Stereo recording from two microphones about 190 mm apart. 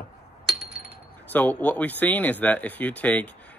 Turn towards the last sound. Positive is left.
turn(degrees=10)  # may be behind; listen again after turning